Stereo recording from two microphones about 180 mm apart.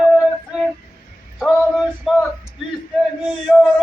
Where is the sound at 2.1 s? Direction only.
Centre (ahead or behind).